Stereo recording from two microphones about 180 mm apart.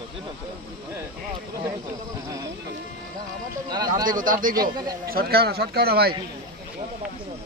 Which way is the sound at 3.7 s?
25° right (ahead or behind).